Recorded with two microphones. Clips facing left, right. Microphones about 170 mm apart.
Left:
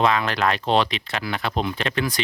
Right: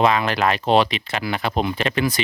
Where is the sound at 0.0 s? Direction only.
5° right (ahead or behind).